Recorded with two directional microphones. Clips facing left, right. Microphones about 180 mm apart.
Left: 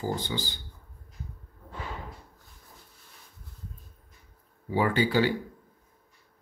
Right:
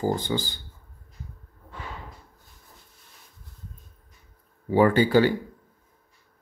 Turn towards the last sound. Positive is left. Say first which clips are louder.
# right 6 dB
turn(degrees=-45)  # may be behind; listen again after turning